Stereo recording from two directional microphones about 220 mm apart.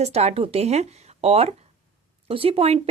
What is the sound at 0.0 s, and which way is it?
Speech, 30° right (ahead or behind).